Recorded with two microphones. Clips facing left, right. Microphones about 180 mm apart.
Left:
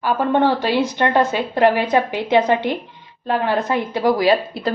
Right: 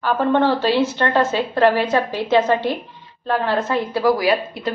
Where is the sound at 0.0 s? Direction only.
15° left (ahead or behind).